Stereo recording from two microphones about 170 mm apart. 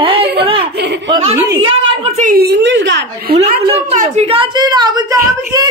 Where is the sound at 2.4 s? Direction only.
85° right.